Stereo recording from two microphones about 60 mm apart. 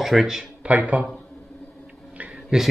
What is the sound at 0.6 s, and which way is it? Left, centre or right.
Speech, right.